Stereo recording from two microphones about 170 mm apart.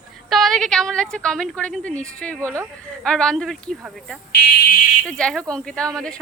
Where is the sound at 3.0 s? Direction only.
5° left (ahead or behind).